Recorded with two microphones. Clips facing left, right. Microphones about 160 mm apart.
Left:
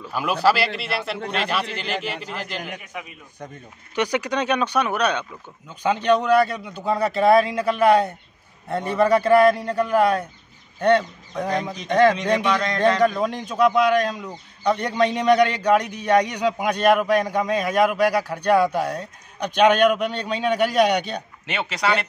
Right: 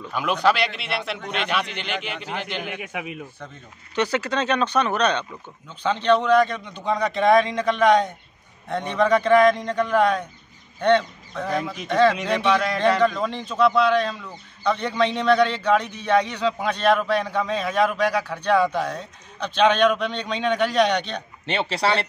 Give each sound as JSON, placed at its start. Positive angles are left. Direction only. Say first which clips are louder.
{"t": 0.0, "sound": "speech", "louder": "left 1 dB", "side_deg": 5}
{"t": 1.2, "sound": "speech", "louder": "left 2 dB", "side_deg": 35}
{"t": 1.8, "sound": "speech", "louder": "left 2 dB", "side_deg": 0}
{"t": 2.8, "sound": "speech", "louder": "right 5 dB", "side_deg": -90}
{"t": 3.9, "sound": "a man's voice", "louder": "even", "side_deg": 15}
{"t": 12.5, "sound": "a man's voice", "louder": "even", "side_deg": -10}
{"t": 13.0, "sound": "a man's voice", "louder": "left 1 dB", "side_deg": 10}
{"t": 21.5, "sound": "speech", "louder": "right 1 dB", "side_deg": -30}